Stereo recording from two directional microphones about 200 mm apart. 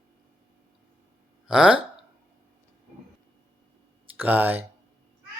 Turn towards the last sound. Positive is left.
turn(degrees=-10)  # may be behind; listen again after turning